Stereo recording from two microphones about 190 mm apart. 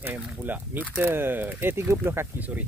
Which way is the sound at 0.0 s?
10° right (ahead or behind).